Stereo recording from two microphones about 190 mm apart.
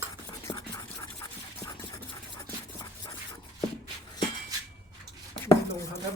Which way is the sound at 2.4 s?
20° left (ahead or behind).